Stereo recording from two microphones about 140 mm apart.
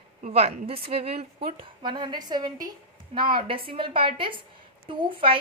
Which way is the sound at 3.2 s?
90° right.